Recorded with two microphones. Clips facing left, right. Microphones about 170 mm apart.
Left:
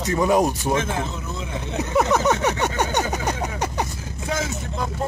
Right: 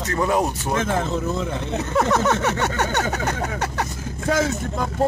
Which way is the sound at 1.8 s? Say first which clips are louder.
Left 1 dB; 10° left (ahead or behind).